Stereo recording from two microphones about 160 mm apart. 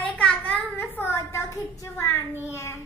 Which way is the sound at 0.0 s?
5° left (ahead or behind).